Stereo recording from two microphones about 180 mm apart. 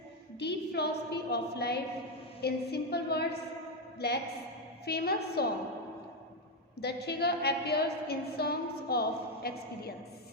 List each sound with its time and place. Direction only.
0.3 s a woman's voice: 65° left (ahead or behind)
6.8 s a woman's voice: 65° left (ahead or behind)